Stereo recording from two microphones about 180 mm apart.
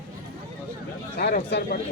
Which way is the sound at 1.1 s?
65° left (ahead or behind).